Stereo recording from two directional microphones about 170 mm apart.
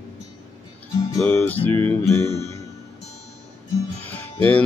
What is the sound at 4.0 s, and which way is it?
Music, 10° left (ahead or behind).